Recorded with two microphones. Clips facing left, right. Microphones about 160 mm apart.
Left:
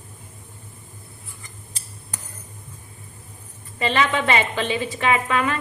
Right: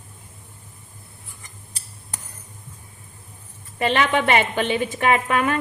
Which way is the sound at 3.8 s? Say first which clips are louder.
Right 1 dB; 60° right (ahead or behind).